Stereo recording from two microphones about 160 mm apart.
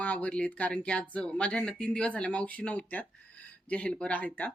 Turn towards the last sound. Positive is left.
turn(degrees=10)  # may be behind; listen again after turning